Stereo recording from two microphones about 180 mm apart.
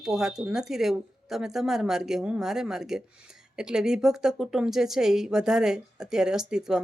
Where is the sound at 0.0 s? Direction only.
5° right (ahead or behind).